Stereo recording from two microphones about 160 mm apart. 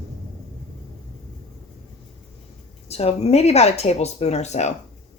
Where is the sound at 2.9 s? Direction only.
40° left (ahead or behind).